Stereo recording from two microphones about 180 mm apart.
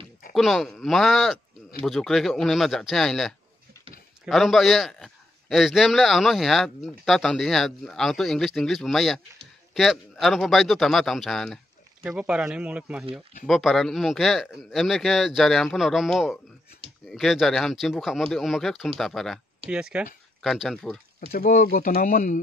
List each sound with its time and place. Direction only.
0.3 s a man's voice: centre (ahead or behind)
21.3 s speech: 50° left (ahead or behind)